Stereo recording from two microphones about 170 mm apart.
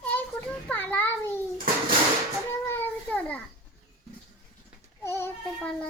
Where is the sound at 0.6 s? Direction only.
10° left (ahead or behind).